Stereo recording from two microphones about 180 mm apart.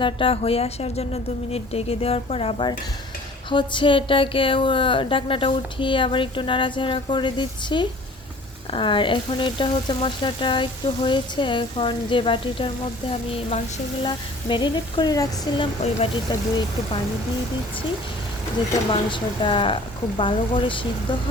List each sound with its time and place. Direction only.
0.0 s a woman's voice: 30° left (ahead or behind)
18.9 s speech: 25° left (ahead or behind)